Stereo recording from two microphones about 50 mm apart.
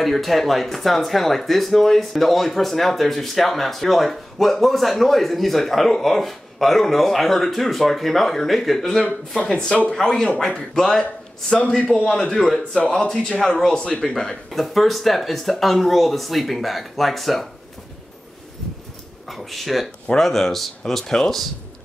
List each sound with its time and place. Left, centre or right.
0.0 s speech: centre
19.2 s speech: centre